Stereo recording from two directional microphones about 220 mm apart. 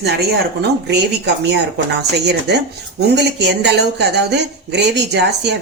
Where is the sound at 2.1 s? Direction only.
50° right (ahead or behind).